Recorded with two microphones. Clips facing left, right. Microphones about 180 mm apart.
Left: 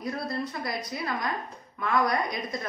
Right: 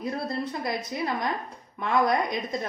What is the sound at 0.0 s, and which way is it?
Speech, 25° right (ahead or behind).